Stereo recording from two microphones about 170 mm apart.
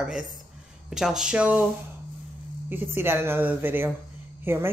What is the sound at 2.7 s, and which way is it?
A woman's voice, 15° right (ahead or behind).